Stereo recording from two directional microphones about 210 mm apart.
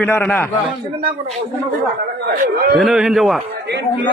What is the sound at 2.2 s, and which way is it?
Speech, 40° right (ahead or behind).